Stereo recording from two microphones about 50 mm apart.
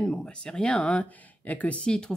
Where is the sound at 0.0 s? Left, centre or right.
Centre.